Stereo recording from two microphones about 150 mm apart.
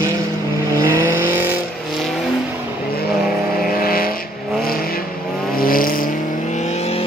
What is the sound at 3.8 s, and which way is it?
Vehicle, 80° left.